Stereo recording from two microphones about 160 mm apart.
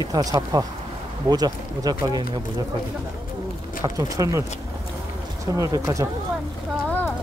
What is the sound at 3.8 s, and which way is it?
Speech, 20° right (ahead or behind).